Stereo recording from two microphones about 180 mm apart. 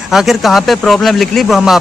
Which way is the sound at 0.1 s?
Centre (ahead or behind).